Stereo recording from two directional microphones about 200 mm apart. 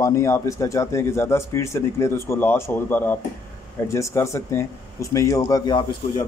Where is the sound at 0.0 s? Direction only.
15° left (ahead or behind).